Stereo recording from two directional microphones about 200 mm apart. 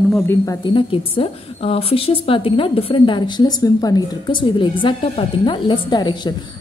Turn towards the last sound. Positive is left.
turn(degrees=20)  # may be behind; listen again after turning